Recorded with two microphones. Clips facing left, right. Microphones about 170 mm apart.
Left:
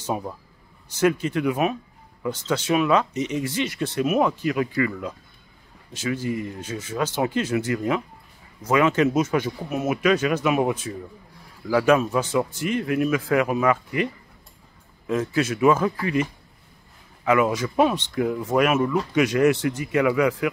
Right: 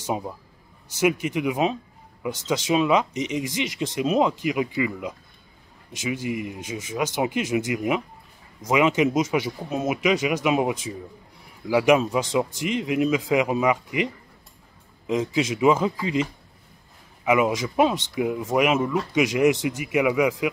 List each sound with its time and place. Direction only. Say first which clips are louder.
0.0 s speech: even; 15° right (ahead or behind)